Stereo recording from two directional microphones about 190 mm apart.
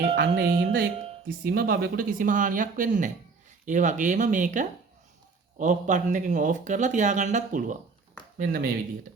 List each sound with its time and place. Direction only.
0.2 s speech: 50° right (ahead or behind)